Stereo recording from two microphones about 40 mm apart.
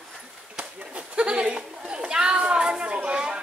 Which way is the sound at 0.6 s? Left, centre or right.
Right.